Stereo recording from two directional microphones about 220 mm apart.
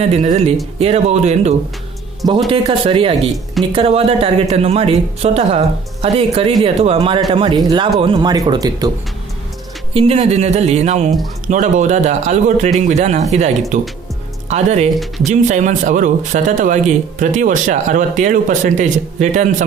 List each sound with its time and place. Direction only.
0.0 s speech: 30° right (ahead or behind)
9.9 s speech: 25° right (ahead or behind)